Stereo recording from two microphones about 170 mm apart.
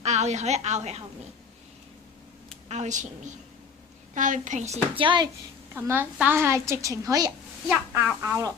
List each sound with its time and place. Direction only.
0.0 s a woman's voice: 40° right (ahead or behind)
2.6 s speech: 45° right (ahead or behind)
5.0 s speech: 25° right (ahead or behind)
5.7 s a woman's voice: 10° right (ahead or behind)
7.7 s a woman's voice: 5° right (ahead or behind)
8.2 s a woman's voice: 15° right (ahead or behind)